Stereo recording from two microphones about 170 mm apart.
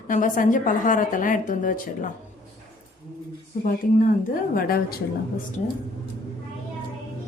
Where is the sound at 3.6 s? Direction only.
55° left (ahead or behind).